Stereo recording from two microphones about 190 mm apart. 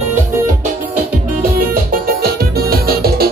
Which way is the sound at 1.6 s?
55° right (ahead or behind).